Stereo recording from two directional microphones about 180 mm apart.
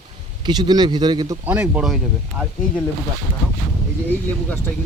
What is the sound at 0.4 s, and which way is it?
Speech, 25° right (ahead or behind).